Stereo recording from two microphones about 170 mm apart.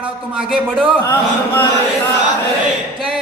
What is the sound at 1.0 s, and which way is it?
Speech, 15° left (ahead or behind).